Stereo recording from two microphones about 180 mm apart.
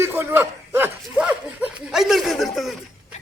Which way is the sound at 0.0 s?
10° right (ahead or behind).